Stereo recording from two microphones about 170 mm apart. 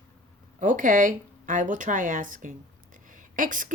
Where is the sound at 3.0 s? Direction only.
50° right (ahead or behind).